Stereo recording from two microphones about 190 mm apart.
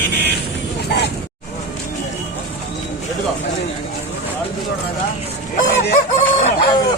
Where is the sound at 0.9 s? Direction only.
60° left (ahead or behind).